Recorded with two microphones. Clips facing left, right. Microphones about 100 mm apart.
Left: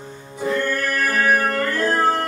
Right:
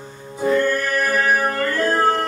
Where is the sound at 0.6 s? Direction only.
Centre (ahead or behind).